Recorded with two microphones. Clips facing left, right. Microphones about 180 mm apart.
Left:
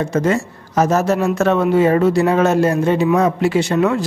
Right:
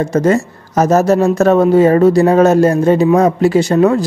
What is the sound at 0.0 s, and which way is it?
Speech, 40° right (ahead or behind).